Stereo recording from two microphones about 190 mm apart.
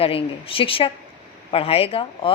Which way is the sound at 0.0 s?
30° left (ahead or behind).